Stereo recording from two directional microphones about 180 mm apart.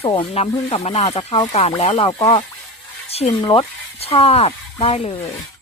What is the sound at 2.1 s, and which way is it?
Speech, 20° left (ahead or behind).